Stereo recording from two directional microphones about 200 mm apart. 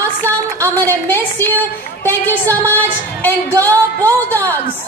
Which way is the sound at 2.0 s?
10° left (ahead or behind).